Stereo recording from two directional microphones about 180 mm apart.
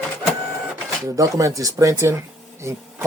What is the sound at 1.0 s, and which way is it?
Speech, 15° right (ahead or behind).